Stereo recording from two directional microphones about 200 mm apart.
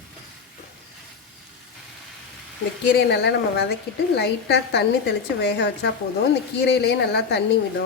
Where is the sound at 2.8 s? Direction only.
60° left (ahead or behind).